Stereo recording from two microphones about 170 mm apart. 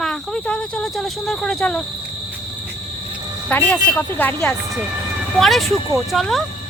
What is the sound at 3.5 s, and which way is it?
Speech, 10° left (ahead or behind).